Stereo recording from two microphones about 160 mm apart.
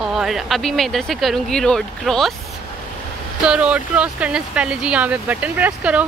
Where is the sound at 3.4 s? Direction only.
5° right (ahead or behind).